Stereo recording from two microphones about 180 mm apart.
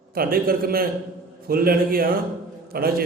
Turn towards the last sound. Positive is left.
turn(degrees=-55)  # may be behind; listen again after turning